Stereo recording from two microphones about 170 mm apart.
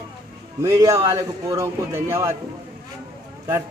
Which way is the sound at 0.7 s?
20° right (ahead or behind).